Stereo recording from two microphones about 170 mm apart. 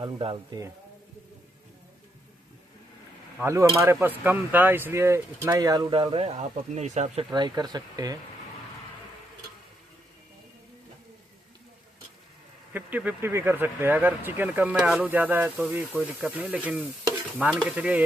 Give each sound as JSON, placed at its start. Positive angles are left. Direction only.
{"t": 0.0, "sound": "speech", "side_deg": -30}
{"t": 3.3, "sound": "speech", "side_deg": -15}
{"t": 7.2, "sound": "speech", "side_deg": -25}
{"t": 12.7, "sound": "speech", "side_deg": -10}